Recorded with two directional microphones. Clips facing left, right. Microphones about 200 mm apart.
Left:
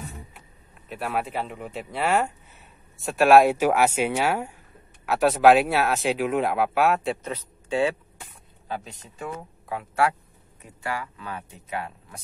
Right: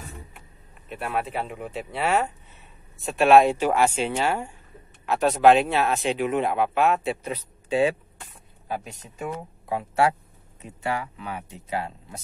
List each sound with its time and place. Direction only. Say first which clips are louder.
0.8 s speech: even; 5° left (ahead or behind)
7.2 s speech: right 1 dB; 15° right (ahead or behind)
9.0 s speech: right 2 dB; 25° right (ahead or behind)